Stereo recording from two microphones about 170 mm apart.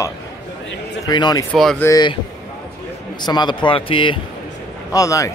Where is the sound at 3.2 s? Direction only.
25° left (ahead or behind).